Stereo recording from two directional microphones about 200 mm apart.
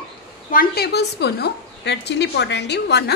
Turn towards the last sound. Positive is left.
turn(degrees=55)  # may be behind; listen again after turning